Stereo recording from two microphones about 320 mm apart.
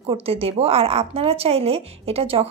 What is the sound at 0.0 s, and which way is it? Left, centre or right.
Speech, centre.